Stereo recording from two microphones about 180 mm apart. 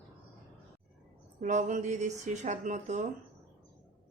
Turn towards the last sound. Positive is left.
turn(degrees=-40)  # may be behind; listen again after turning